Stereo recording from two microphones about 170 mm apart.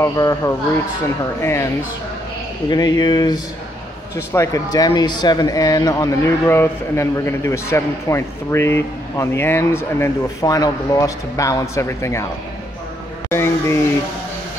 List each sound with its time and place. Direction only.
0.0 s a man's voice: 20° left (ahead or behind)
2.7 s a man's voice: 25° left (ahead or behind)
13.3 s a man's voice: 15° left (ahead or behind)